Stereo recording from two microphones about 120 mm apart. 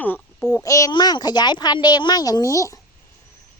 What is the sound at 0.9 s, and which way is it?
Speech, 40° left (ahead or behind).